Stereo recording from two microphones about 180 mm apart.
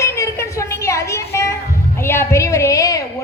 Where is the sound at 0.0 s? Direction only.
15° left (ahead or behind).